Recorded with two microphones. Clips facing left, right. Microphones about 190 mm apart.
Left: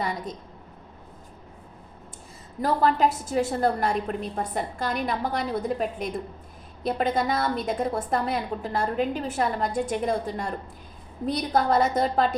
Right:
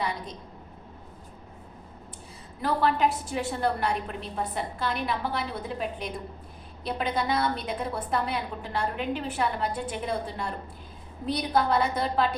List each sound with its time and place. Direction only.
2.6 s a woman's voice: 40° left (ahead or behind)